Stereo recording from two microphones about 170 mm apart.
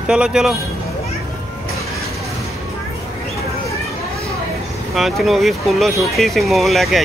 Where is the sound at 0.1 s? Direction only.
5° right (ahead or behind).